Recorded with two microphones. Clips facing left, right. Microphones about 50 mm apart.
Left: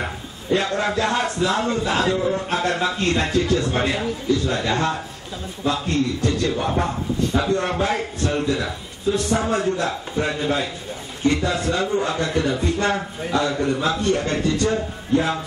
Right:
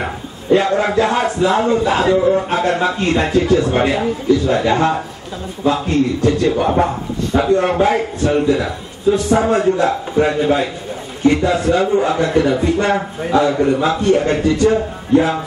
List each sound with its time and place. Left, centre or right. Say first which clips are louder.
0.0 s a man's voice: right 5 dB; centre